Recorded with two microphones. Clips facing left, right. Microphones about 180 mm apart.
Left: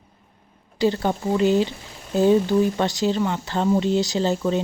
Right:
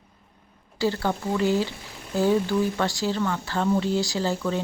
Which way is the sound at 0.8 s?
20° left (ahead or behind).